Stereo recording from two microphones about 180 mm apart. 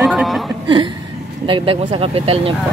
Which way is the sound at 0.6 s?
25° right (ahead or behind).